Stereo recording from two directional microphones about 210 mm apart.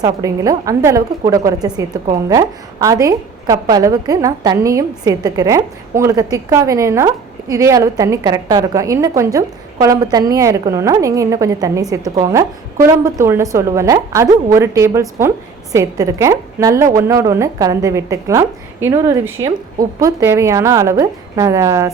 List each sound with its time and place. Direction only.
0.0 s speech: 15° right (ahead or behind)